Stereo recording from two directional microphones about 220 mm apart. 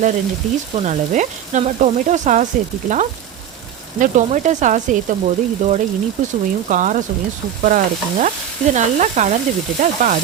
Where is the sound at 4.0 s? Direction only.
35° right (ahead or behind).